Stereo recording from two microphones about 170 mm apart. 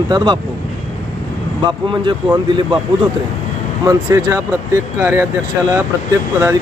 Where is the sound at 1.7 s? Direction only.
30° right (ahead or behind).